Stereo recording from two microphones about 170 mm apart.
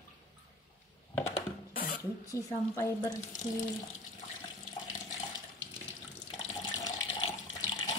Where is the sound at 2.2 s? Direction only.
20° left (ahead or behind).